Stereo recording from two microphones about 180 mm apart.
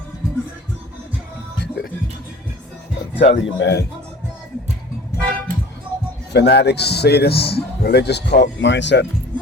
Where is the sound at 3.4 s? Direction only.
85° left.